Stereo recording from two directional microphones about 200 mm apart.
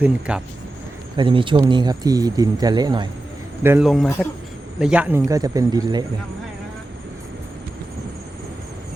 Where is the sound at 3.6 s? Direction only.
10° right (ahead or behind).